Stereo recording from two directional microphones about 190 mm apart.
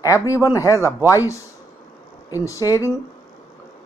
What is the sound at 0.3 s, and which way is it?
Speech, 15° left (ahead or behind).